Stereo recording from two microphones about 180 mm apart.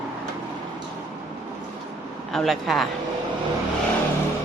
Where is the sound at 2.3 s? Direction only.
Centre (ahead or behind).